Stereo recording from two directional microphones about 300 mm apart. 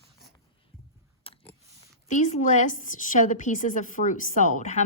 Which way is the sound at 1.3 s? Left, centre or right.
Centre.